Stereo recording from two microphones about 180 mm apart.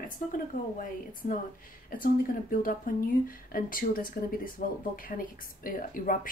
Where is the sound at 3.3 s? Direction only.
55° left (ahead or behind).